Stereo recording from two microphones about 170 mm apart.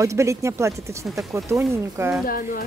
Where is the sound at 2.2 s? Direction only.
55° left (ahead or behind).